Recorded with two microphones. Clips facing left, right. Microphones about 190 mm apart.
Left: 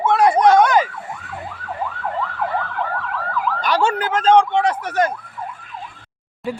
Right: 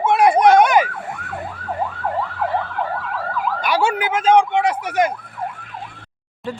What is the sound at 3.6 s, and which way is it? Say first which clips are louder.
Police car: even; 10° right (ahead or behind).